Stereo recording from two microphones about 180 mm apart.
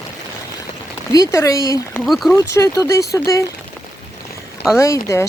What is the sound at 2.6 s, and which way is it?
Speech, 15° left (ahead or behind).